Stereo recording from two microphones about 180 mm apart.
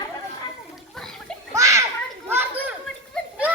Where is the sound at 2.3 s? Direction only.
10° right (ahead or behind).